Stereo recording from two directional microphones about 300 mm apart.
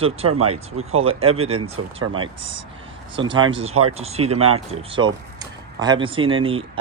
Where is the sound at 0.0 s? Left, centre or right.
Centre.